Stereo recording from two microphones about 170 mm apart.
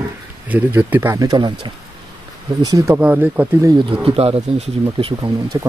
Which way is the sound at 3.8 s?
35° right (ahead or behind).